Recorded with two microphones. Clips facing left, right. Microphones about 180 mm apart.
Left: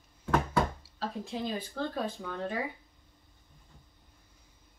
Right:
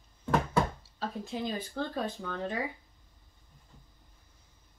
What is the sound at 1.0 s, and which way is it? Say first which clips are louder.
Speech: even; centre (ahead or behind).